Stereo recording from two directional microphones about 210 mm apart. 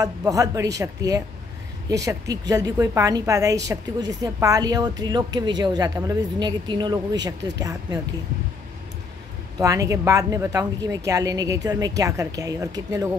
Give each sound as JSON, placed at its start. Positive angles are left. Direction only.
{"t": 0.0, "sound": "a woman's voice", "side_deg": -15}
{"t": 9.6, "sound": "a woman's voice", "side_deg": -15}